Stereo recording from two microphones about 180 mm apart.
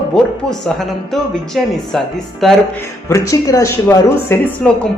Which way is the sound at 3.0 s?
15° left (ahead or behind).